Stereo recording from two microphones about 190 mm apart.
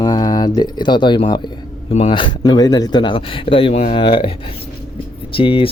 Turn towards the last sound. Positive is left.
turn(degrees=30)  # may be behind; listen again after turning